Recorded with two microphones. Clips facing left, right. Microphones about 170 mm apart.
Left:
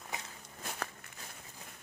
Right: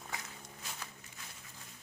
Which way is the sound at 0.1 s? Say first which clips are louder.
Left 2 dB; 20° left (ahead or behind).